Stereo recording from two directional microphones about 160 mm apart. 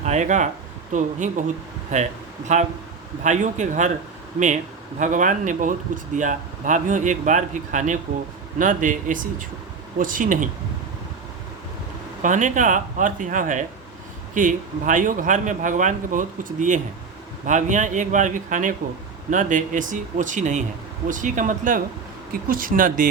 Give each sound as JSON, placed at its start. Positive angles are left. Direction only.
{"t": 0.0, "sound": "speech", "side_deg": -45}
{"t": 4.9, "sound": "a man's voice", "side_deg": -50}
{"t": 12.2, "sound": "a man's voice", "side_deg": -55}